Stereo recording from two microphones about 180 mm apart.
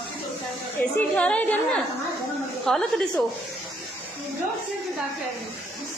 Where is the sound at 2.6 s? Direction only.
5° left (ahead or behind).